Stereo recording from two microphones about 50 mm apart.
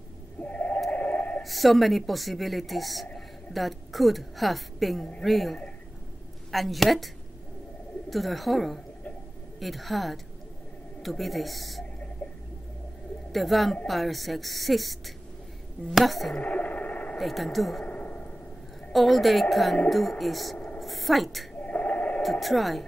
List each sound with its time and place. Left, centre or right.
0.4 s a sound: left
1.4 s a woman's voice: centre
8.1 s speech: centre
13.3 s speech: centre
16.4 s radio: left
17.2 s speech: centre
17.8 s a sound: left
18.9 s a woman's voice: centre
21.5 s a sound: left
22.2 s speech: centre